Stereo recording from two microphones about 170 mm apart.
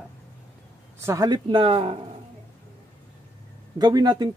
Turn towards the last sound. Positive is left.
turn(degrees=-25)  # may be behind; listen again after turning